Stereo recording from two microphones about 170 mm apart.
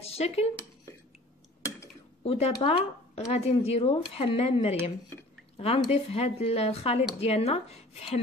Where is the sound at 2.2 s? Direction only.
35° left (ahead or behind).